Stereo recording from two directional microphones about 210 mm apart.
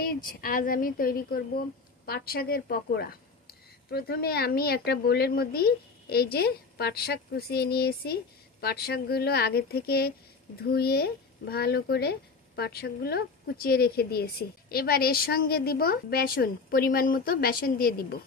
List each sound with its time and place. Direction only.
0.0 s a woman's voice: 45° left (ahead or behind)